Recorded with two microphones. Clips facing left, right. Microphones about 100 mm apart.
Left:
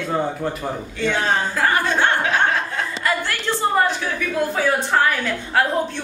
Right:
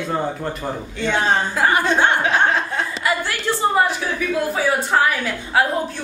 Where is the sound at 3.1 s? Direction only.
10° right (ahead or behind).